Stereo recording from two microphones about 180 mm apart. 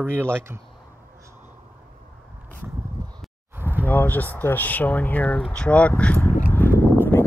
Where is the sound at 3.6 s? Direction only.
10° right (ahead or behind).